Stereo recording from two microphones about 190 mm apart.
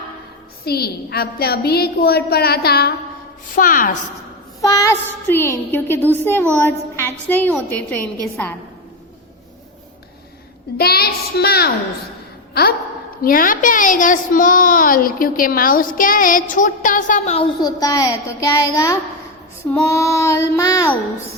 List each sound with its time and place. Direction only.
0.6 s a woman's voice: 55° left (ahead or behind)
4.6 s a woman's voice: 15° left (ahead or behind)
10.8 s child singing: 55° left (ahead or behind)
13.2 s a woman's voice: 50° left (ahead or behind)
17.6 s a child's voice: 20° left (ahead or behind)